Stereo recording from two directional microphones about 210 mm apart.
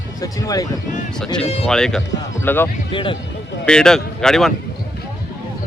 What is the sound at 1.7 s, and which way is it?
Speech, 5° left (ahead or behind).